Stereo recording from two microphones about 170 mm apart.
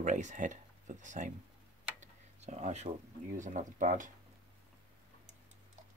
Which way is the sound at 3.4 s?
45° right (ahead or behind).